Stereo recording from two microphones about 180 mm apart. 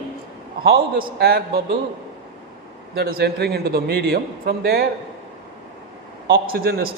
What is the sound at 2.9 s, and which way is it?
A man's voice, 60° right (ahead or behind).